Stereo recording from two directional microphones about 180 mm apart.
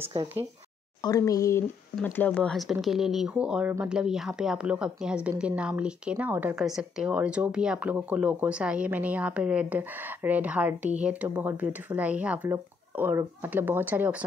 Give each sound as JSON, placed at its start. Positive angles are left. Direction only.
{"t": 1.0, "sound": "speech", "side_deg": 20}